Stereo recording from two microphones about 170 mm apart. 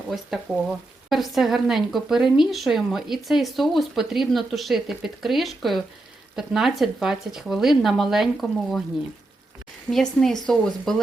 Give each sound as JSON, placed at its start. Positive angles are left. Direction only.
{"t": 0.5, "sound": "speech", "side_deg": -5}
{"t": 9.9, "sound": "speech", "side_deg": 0}